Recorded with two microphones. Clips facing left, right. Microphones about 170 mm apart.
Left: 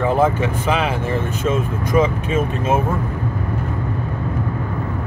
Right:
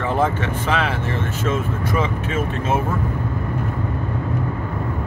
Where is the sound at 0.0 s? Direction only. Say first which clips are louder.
Left 4 dB; 10° left (ahead or behind).